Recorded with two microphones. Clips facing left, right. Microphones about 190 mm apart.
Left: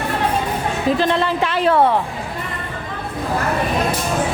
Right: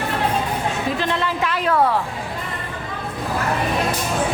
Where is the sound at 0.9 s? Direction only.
30° left (ahead or behind).